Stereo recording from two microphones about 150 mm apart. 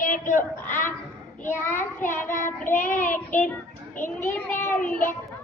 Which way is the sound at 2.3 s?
60° left (ahead or behind).